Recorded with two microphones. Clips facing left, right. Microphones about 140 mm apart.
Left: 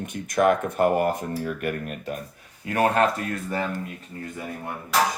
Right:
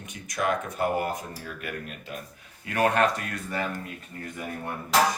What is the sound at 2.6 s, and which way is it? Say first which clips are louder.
Speech: left 2 dB; 30° left (ahead or behind).